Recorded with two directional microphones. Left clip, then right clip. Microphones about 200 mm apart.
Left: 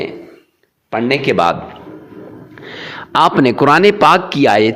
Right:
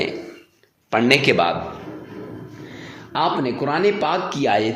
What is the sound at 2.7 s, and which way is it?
A man's voice, 45° left (ahead or behind).